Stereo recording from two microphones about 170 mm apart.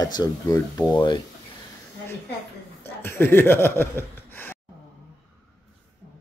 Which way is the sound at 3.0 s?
15° left (ahead or behind).